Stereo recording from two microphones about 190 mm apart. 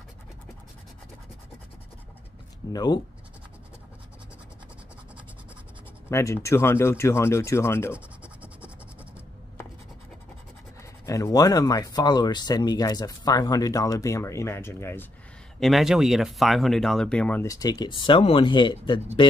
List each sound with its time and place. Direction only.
2.7 s speech: 20° left (ahead or behind)
6.0 s speech: 15° left (ahead or behind)
7.9 s scratch: 5° right (ahead or behind)
11.1 s speech: 20° left (ahead or behind)
15.6 s speech: centre (ahead or behind); by 18.9 s 25° left (ahead or behind)